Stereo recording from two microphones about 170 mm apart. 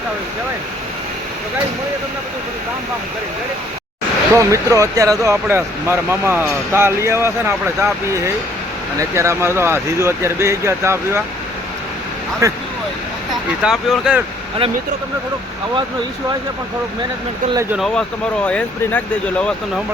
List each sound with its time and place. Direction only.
4.4 s speech: 20° right (ahead or behind)
12.4 s speech: 20° right (ahead or behind)
13.6 s speech: 5° right (ahead or behind)
17.7 s speech: centre (ahead or behind)